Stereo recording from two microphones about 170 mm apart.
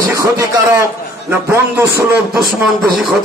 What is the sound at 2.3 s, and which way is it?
Speech, centre (ahead or behind).